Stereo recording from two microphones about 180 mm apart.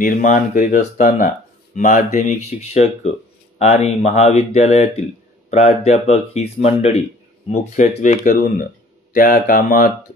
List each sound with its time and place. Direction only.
0.0 s speech: 50° left (ahead or behind)